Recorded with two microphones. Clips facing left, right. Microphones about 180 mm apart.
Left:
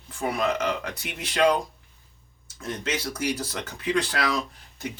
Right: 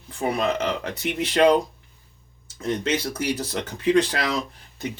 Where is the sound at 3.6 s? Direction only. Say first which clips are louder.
Right 7 dB; 60° right (ahead or behind).